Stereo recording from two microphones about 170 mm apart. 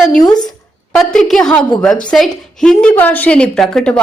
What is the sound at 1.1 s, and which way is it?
A woman's voice, 5° left (ahead or behind).